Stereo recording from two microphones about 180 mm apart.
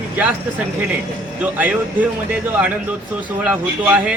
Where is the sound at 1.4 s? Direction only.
10° right (ahead or behind).